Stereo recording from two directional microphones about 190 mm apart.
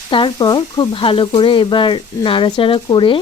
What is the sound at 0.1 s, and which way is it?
Speech, 25° left (ahead or behind).